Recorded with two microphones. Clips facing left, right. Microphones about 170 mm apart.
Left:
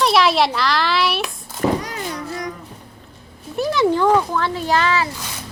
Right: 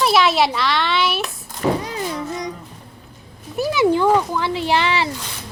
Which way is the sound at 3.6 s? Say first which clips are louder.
Even; 10° right (ahead or behind).